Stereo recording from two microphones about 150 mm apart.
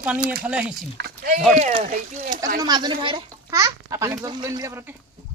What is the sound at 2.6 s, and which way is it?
A child's voice, 30° right (ahead or behind).